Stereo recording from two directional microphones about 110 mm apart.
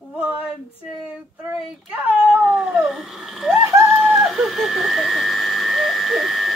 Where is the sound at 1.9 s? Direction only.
15° right (ahead or behind).